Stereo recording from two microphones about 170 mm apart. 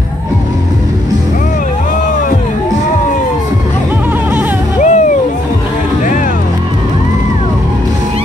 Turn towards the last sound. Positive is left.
turn(degrees=50)  # may be behind; listen again after turning